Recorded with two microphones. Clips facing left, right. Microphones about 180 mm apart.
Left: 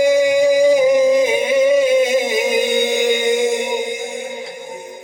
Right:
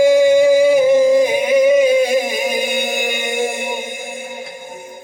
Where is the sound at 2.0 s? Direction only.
20° left (ahead or behind).